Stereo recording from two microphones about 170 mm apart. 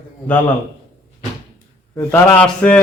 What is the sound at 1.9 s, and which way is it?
Speech, 10° left (ahead or behind).